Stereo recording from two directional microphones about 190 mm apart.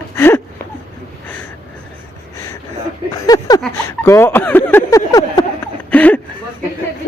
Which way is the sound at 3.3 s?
20° left (ahead or behind).